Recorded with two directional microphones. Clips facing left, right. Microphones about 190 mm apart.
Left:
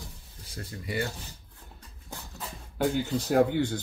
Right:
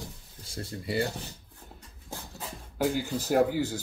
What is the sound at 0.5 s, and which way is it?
Speech, 30° right (ahead or behind).